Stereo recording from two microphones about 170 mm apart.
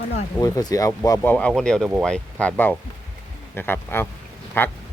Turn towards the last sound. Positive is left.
turn(degrees=10)  # may be behind; listen again after turning